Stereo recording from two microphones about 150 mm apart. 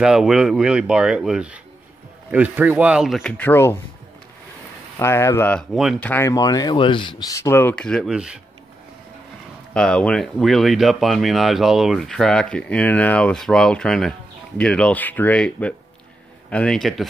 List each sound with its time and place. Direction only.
0.0 s speech: 5° right (ahead or behind)
3.3 s speech: 15° left (ahead or behind)
4.9 s speech: 20° left (ahead or behind)
8.1 s speech: 5° right (ahead or behind)
9.8 s speech: 5° left (ahead or behind)